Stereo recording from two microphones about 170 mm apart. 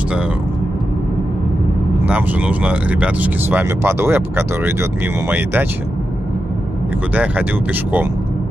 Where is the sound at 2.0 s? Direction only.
10° right (ahead or behind).